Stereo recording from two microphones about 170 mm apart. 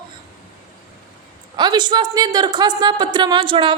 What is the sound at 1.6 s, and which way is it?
A woman's voice, 25° right (ahead or behind).